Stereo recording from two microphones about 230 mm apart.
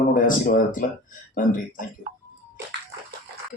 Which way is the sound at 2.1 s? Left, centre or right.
Right.